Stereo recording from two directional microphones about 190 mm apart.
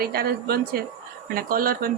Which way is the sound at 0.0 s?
55° right (ahead or behind).